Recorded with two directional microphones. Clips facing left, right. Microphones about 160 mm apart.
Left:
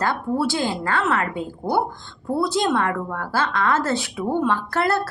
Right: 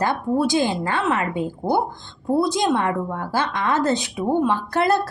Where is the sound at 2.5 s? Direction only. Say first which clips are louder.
Right 1 dB; 15° right (ahead or behind).